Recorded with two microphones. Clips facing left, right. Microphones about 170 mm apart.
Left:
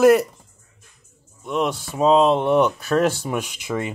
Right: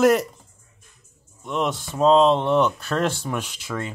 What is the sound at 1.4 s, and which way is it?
Speech, centre (ahead or behind).